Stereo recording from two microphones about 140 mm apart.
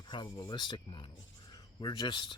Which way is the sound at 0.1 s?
35° left (ahead or behind).